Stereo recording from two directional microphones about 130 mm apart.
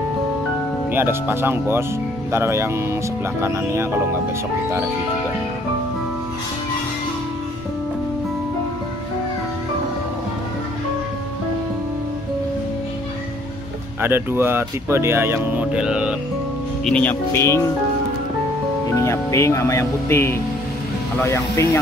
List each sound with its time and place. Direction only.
0.9 s speech: 15° right (ahead or behind)
14.0 s speech: 15° right (ahead or behind)
16.8 s speech: 10° left (ahead or behind)
18.9 s speech: 20° left (ahead or behind)